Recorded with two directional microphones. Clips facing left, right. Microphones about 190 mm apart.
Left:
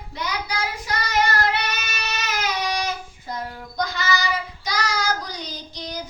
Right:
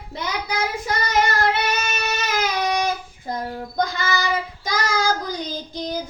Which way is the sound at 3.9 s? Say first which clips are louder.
Right 1 dB; 55° right (ahead or behind).